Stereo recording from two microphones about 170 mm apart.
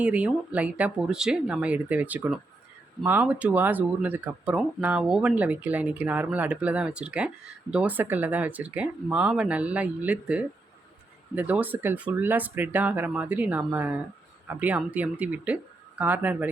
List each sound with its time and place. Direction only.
0.0 s speech: 10° right (ahead or behind)